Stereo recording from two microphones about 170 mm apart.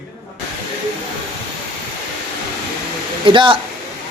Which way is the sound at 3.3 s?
30° right (ahead or behind).